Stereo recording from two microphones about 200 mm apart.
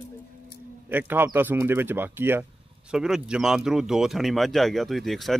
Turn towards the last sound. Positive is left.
turn(degrees=0)  # may be behind; listen again after turning